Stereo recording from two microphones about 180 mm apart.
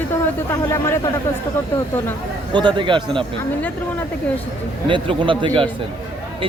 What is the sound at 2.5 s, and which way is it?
Speech, 25° right (ahead or behind).